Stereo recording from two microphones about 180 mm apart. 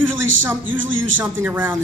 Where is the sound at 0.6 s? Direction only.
90° right.